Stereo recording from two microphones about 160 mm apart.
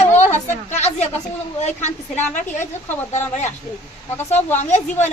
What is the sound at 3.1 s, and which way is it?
A woman's voice, 45° left (ahead or behind).